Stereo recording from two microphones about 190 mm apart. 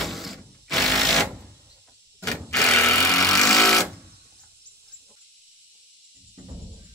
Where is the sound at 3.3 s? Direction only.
Centre (ahead or behind).